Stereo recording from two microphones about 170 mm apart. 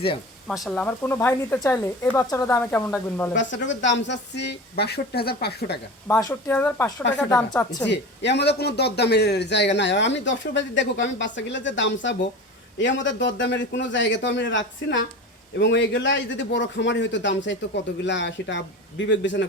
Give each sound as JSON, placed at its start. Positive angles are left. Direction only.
{"t": 0.4, "sound": "speech", "side_deg": 0}
{"t": 3.3, "sound": "a man's voice", "side_deg": 90}
{"t": 4.8, "sound": "speech", "side_deg": 70}
{"t": 6.1, "sound": "speech", "side_deg": 15}
{"t": 7.9, "sound": "a man's voice", "side_deg": 90}